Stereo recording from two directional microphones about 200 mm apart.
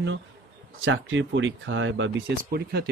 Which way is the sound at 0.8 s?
70° right (ahead or behind).